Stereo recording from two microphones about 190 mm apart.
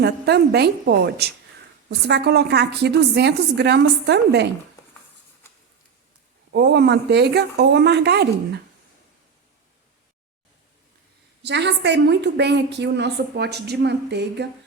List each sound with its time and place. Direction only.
0.0 s a woman's voice: 60° right (ahead or behind)
6.5 s a woman's voice: 65° right (ahead or behind)
11.4 s a woman's voice: 65° right (ahead or behind)